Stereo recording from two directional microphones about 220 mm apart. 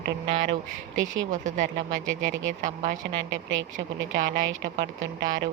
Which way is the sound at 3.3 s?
60° right (ahead or behind).